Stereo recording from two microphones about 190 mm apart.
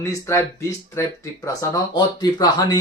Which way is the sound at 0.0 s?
15° left (ahead or behind).